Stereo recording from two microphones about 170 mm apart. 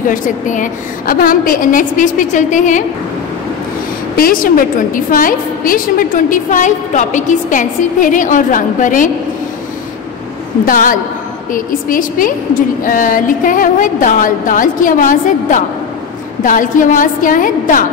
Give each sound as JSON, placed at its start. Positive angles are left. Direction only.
{"t": 0.1, "sound": "a woman's voice", "side_deg": 50}
{"t": 4.2, "sound": "a woman's voice", "side_deg": 55}
{"t": 10.6, "sound": "a woman's voice", "side_deg": 55}